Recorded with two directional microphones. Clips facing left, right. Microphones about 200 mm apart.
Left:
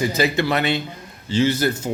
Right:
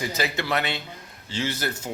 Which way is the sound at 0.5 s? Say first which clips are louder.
Left 6 dB; centre (ahead or behind).